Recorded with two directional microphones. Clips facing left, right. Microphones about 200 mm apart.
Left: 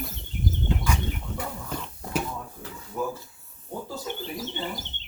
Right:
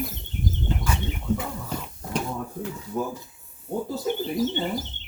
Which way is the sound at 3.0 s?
25° right (ahead or behind).